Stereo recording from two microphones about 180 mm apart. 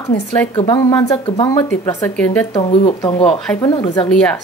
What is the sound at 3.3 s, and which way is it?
Speech, 5° left (ahead or behind).